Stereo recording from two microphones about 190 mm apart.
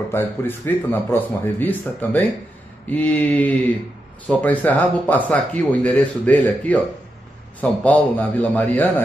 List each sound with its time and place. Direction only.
0.1 s speech: 10° left (ahead or behind)